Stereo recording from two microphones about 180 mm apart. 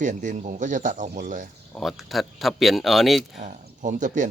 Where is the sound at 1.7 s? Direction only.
Centre (ahead or behind).